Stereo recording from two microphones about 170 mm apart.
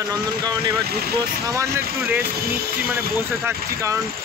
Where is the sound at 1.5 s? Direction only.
15° right (ahead or behind).